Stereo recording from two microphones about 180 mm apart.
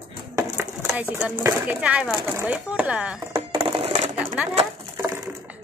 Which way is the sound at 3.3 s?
30° right (ahead or behind).